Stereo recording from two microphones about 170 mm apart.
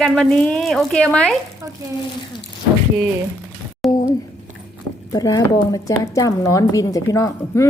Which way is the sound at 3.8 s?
Centre (ahead or behind).